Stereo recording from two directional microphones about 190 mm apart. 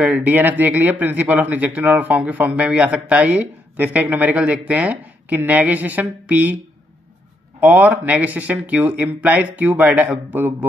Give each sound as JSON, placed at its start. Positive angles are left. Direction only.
{"t": 0.0, "sound": "speech", "side_deg": -10}
{"t": 7.6, "sound": "speech", "side_deg": -10}